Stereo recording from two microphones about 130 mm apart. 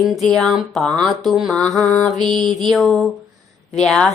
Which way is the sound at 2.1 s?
35° right (ahead or behind).